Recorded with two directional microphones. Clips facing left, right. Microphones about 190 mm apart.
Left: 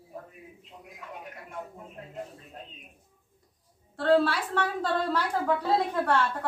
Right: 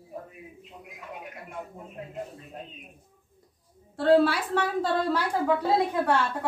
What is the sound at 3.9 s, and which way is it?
A woman's voice, 10° right (ahead or behind).